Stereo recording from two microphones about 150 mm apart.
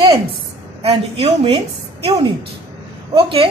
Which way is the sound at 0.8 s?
40° right (ahead or behind).